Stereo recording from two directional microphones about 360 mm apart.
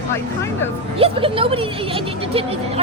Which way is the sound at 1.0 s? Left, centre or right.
Centre.